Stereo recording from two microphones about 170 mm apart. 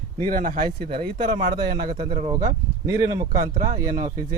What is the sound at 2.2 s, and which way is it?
Speech, 25° right (ahead or behind).